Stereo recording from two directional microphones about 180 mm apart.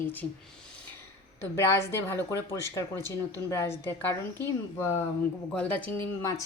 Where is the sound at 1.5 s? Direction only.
15° left (ahead or behind).